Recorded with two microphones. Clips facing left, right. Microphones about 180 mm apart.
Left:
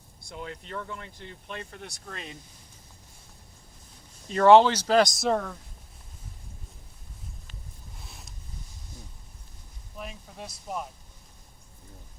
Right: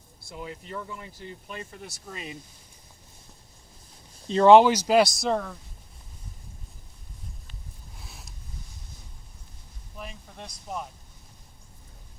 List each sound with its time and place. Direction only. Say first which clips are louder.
0.3 s speech: right 1 dB; 5° right (ahead or behind)
4.3 s speech: right 2 dB; 20° right (ahead or behind); by 5.5 s centre (ahead or behind)
7.9 s a sound: right 1 dB; centre (ahead or behind)
10.0 s speech: left 1 dB; centre (ahead or behind)